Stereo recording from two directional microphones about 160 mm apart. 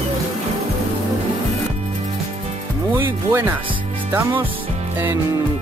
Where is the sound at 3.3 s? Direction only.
15° right (ahead or behind).